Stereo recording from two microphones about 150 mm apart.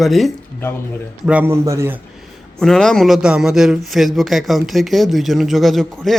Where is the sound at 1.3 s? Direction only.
10° right (ahead or behind).